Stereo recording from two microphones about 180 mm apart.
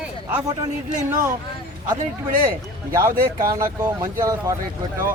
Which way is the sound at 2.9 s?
20° right (ahead or behind).